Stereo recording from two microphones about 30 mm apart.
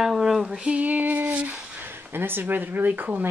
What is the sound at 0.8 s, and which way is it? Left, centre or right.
Speech, right.